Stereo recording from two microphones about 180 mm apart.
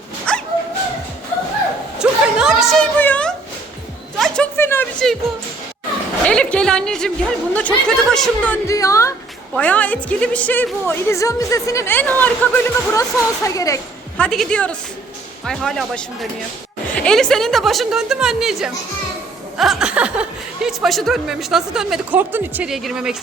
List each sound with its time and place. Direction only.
0.3 s dog: 5° left (ahead or behind)
2.0 s a sound: 5° right (ahead or behind)
4.5 s a sound: 15° left (ahead or behind)
6.2 s a woman's voice: 5° left (ahead or behind)
8.6 s a woman's voice: 15° left (ahead or behind)
14.2 s a woman's voice: 5° left (ahead or behind)